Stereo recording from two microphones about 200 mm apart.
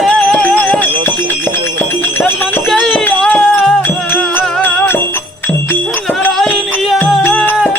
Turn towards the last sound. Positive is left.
turn(degrees=5)  # may be behind; listen again after turning